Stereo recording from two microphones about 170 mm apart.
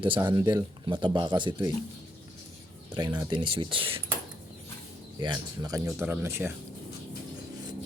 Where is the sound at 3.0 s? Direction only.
25° right (ahead or behind).